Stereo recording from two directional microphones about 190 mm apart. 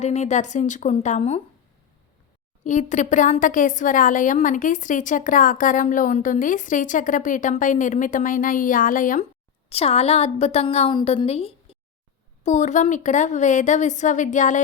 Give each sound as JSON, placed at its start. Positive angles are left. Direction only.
{"t": 0.0, "sound": "a woman's voice", "side_deg": 35}
{"t": 2.6, "sound": "a woman's voice", "side_deg": 40}
{"t": 9.6, "sound": "a woman's voice", "side_deg": 30}